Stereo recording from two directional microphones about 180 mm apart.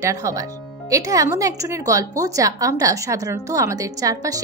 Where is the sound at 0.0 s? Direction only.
20° right (ahead or behind).